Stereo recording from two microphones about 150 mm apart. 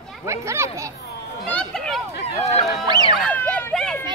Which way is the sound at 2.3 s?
45° left (ahead or behind).